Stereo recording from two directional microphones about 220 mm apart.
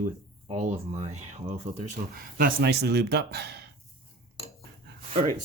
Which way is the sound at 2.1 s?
40° right (ahead or behind).